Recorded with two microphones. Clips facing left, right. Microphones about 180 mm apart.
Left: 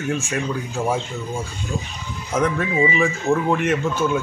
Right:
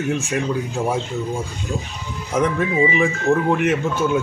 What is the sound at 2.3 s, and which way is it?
Speech, 15° right (ahead or behind).